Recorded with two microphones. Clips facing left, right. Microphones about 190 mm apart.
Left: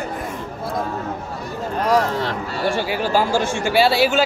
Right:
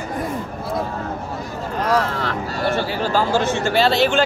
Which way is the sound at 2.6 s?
15° left (ahead or behind).